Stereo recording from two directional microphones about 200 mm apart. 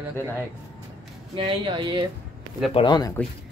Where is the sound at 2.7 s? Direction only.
25° left (ahead or behind).